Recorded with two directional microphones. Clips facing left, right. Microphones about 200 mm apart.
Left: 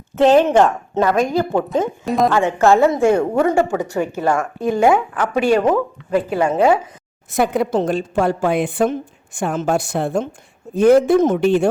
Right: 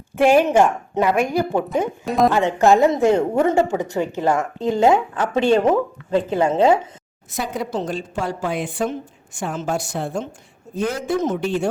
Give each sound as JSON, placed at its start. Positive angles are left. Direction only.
{"t": 0.3, "sound": "a woman's voice", "side_deg": -10}
{"t": 2.0, "sound": "a woman's voice", "side_deg": 0}
{"t": 2.3, "sound": "speech", "side_deg": -15}
{"t": 7.3, "sound": "a woman's voice", "side_deg": 55}